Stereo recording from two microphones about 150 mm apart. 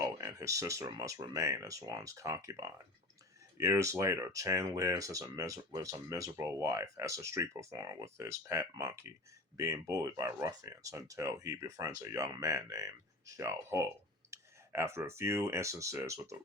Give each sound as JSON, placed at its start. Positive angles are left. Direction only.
{"t": 0.2, "sound": "speech", "side_deg": -20}